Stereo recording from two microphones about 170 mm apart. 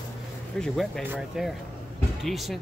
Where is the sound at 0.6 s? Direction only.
Centre (ahead or behind).